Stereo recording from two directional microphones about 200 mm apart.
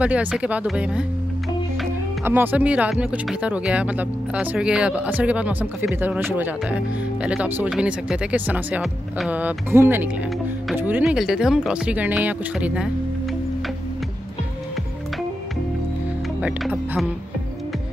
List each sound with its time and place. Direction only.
0.0 s speech: 5° right (ahead or behind)
2.2 s speech: 10° right (ahead or behind)
16.4 s speech: 5° right (ahead or behind)